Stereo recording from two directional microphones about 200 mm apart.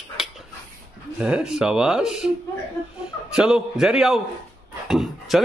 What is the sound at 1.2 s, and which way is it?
Speech, 5° right (ahead or behind).